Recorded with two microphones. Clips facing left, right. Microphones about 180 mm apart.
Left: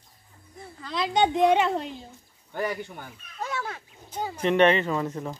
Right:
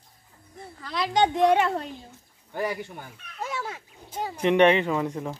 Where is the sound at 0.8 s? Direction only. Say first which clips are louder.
Even; 15° left (ahead or behind).